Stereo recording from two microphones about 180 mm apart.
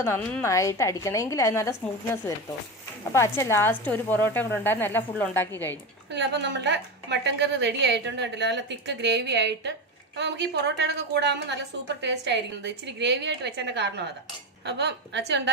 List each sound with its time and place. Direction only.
0.0 s a woman's voice: 10° left (ahead or behind)
3.1 s a woman's voice: 15° left (ahead or behind)
6.1 s a woman's voice: 75° right (ahead or behind)